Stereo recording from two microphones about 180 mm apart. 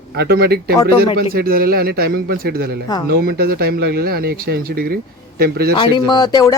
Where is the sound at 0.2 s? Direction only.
60° right (ahead or behind).